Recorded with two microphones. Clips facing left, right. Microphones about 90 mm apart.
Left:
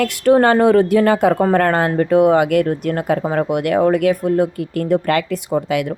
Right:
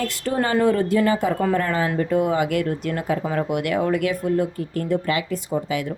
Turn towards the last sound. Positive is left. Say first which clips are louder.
# left 6 dB
turn(degrees=70)  # may be behind; listen again after turning